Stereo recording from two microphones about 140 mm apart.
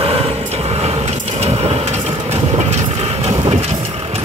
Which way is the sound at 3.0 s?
40° right (ahead or behind).